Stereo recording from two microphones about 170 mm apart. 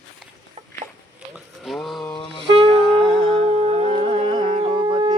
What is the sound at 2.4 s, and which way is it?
Wind instrument, 30° right (ahead or behind).